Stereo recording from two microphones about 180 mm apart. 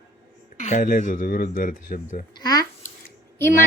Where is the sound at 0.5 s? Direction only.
45° left (ahead or behind).